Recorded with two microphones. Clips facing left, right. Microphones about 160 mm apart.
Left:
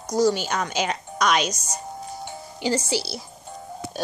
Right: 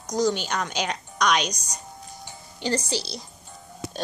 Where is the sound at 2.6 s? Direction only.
10° left (ahead or behind).